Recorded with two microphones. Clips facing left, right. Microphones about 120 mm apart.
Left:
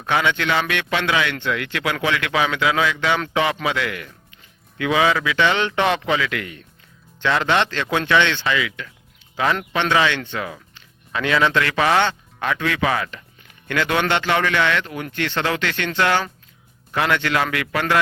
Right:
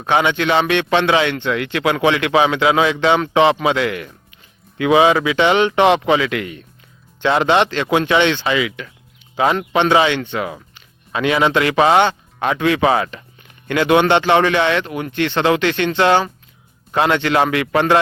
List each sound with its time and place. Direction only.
0.0 s speech: 20° right (ahead or behind)